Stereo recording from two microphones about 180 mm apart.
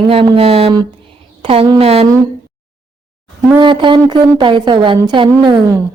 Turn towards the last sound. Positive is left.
turn(degrees=-20)  # may be behind; listen again after turning